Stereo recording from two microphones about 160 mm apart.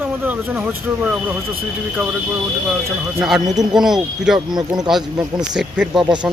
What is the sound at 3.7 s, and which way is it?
Speech, 5° right (ahead or behind).